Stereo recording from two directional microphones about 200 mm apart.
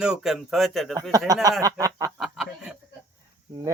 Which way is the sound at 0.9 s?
20° right (ahead or behind).